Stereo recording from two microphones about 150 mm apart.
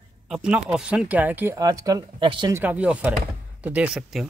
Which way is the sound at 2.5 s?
10° right (ahead or behind).